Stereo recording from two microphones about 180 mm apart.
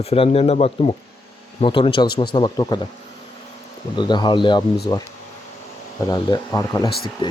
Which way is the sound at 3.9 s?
25° left (ahead or behind).